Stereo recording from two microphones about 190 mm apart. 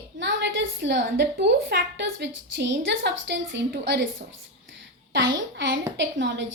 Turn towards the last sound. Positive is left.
turn(degrees=-70)  # may be behind; listen again after turning